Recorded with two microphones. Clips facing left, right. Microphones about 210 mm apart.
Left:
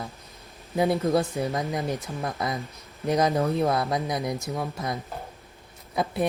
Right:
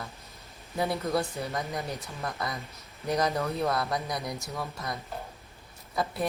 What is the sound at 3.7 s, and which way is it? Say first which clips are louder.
Speech: left 4 dB; 15° left (ahead or behind).